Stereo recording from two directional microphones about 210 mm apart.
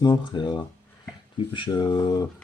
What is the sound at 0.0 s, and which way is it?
Speech, 20° left (ahead or behind).